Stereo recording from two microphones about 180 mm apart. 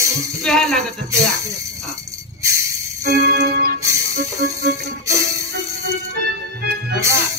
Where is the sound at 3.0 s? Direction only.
65° right (ahead or behind).